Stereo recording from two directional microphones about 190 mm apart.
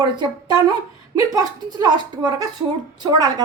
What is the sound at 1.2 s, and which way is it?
Speech, 20° right (ahead or behind).